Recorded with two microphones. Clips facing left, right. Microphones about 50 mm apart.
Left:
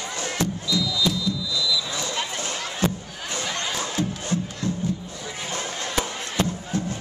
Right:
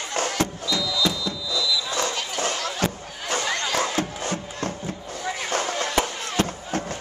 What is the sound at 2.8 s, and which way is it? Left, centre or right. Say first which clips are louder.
Crowd: left 2 dB; right.